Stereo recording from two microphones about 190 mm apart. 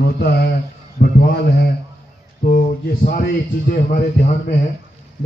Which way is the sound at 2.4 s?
45° left (ahead or behind).